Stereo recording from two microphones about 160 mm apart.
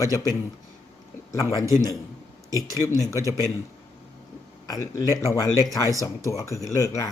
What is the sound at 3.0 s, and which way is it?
Speech, 20° left (ahead or behind).